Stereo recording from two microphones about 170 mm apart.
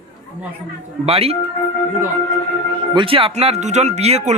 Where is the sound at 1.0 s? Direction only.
35° right (ahead or behind).